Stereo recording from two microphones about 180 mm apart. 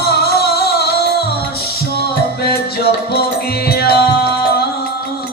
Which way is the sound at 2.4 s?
60° left (ahead or behind).